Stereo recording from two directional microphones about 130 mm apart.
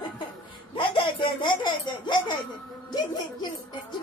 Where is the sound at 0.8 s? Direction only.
40° left (ahead or behind).